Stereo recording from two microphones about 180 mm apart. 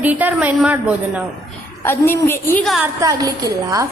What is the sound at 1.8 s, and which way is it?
Speech, 15° left (ahead or behind).